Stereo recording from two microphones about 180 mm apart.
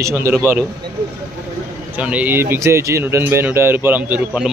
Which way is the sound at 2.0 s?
10° right (ahead or behind).